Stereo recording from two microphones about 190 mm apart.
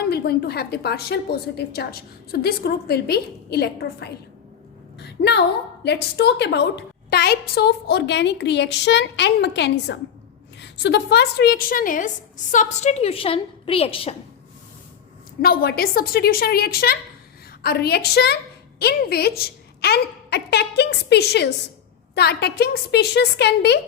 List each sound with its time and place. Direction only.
0.1 s a woman's voice: 55° left (ahead or behind)
4.9 s a sound: 60° left (ahead or behind)
5.8 s a woman's voice: 60° left (ahead or behind); by 14.2 s 30° left (ahead or behind)
15.4 s a woman's voice: 55° left (ahead or behind)